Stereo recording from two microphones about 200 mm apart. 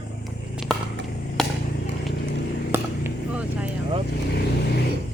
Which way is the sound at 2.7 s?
10° right (ahead or behind).